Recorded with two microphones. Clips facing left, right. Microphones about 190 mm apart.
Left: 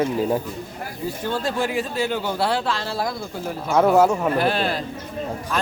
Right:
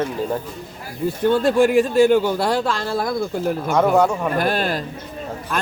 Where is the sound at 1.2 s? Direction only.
55° right (ahead or behind).